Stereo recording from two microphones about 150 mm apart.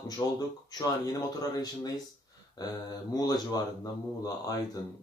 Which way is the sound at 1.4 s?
25° left (ahead or behind).